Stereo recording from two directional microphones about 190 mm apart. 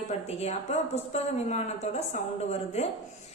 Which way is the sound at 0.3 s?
35° left (ahead or behind).